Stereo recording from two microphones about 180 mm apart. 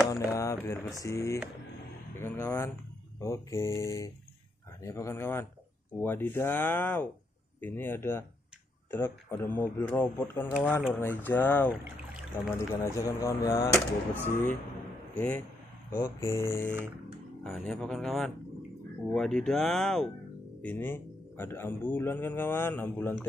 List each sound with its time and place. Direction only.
0.1 s a man's voice: 15° left (ahead or behind)
15.9 s a man's voice: 15° left (ahead or behind)
17.4 s a man's voice: 5° left (ahead or behind)